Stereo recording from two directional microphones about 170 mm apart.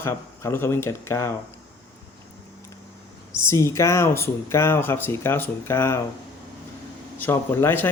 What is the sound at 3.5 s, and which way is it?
A man's voice, 15° left (ahead or behind).